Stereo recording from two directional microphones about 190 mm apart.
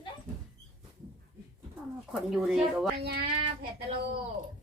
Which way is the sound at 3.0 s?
55° right (ahead or behind).